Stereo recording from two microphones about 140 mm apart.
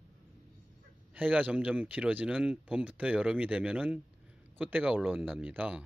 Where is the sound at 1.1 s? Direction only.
10° right (ahead or behind).